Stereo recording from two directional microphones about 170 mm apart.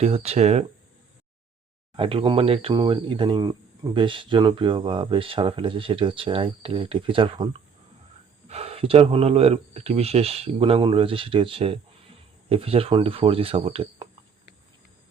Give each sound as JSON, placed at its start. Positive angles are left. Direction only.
{"t": 0.0, "sound": "speech", "side_deg": -35}
{"t": 2.0, "sound": "speech", "side_deg": -30}